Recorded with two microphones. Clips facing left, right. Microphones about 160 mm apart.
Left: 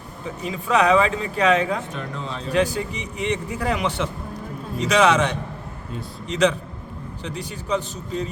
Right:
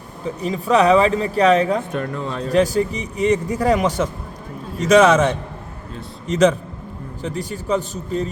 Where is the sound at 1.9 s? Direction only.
55° right (ahead or behind).